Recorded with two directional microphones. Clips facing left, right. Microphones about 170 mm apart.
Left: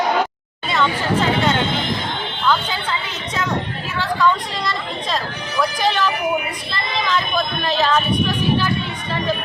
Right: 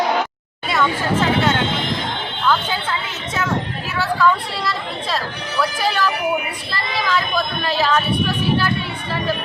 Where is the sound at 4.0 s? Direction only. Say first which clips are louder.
Right 1 dB; 5° right (ahead or behind).